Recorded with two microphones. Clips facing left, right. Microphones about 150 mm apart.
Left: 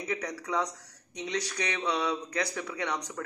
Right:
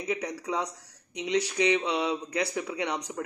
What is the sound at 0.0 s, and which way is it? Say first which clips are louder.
A man's voice: right 3 dB; 25° right (ahead or behind).